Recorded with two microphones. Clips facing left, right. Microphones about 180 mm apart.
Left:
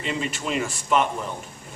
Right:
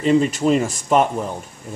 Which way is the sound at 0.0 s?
40° right (ahead or behind).